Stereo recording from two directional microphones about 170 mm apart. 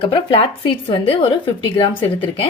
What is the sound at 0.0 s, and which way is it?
Speech, 30° left (ahead or behind).